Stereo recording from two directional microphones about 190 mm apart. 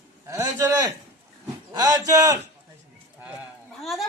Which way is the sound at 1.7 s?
20° right (ahead or behind).